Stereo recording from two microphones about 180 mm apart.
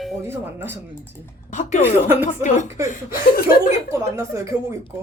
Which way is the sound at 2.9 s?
55° left (ahead or behind).